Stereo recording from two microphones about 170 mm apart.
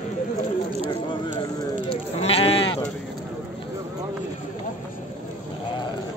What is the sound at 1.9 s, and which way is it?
Sheep, 35° left (ahead or behind).